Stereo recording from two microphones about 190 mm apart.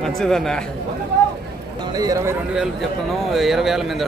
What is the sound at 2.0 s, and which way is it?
Speech, 15° right (ahead or behind).